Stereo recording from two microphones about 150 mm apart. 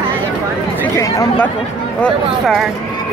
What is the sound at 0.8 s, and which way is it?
Speech, 20° left (ahead or behind).